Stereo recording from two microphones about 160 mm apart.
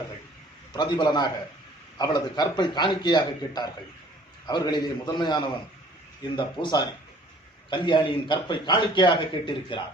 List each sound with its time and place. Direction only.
0.7 s a man's voice: 25° left (ahead or behind)